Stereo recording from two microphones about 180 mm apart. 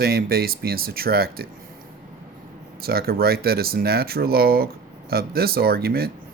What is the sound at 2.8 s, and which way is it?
Speech, 55° right (ahead or behind).